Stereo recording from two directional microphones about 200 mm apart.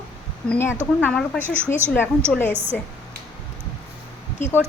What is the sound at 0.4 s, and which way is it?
Speech, 10° left (ahead or behind).